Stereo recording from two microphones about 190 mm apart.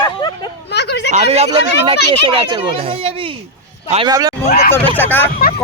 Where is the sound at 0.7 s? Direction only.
60° left (ahead or behind).